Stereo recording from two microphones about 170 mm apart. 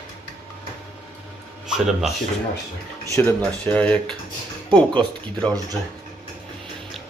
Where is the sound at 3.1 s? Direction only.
15° left (ahead or behind).